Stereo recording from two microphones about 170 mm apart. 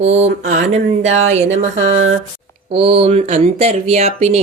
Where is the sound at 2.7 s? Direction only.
35° right (ahead or behind).